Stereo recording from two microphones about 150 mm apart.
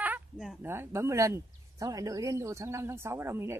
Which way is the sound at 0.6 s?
15° right (ahead or behind).